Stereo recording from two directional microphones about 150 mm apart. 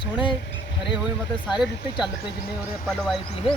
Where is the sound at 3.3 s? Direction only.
40° left (ahead or behind).